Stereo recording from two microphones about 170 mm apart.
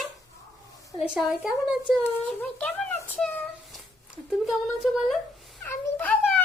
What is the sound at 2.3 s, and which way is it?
Speech, 10° left (ahead or behind).